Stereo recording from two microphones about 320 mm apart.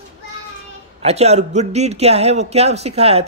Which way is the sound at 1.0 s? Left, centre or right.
Centre.